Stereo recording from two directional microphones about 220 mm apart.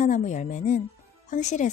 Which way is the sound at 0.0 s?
35° left (ahead or behind).